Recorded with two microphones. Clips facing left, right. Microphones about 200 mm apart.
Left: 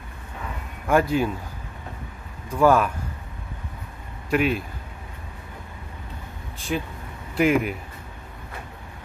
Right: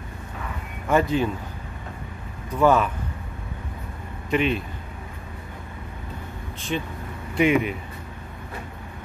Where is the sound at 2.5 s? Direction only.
10° left (ahead or behind).